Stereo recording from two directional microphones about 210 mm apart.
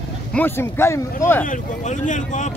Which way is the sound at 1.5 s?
35° left (ahead or behind).